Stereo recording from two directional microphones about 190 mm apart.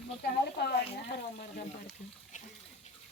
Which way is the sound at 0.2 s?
55° left (ahead or behind).